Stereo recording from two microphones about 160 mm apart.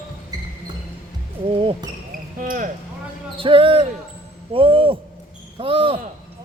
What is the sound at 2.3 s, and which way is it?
Speech, 55° right (ahead or behind).